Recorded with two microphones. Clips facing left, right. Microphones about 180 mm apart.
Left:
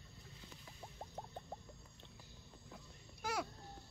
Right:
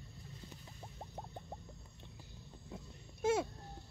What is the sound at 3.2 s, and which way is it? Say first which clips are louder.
Babbling: right 9 dB; 25° right (ahead or behind).